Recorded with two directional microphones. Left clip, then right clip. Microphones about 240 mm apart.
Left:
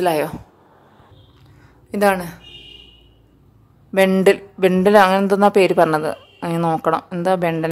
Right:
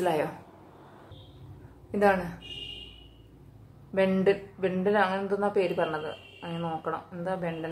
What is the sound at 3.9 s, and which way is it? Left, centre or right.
Speech, left.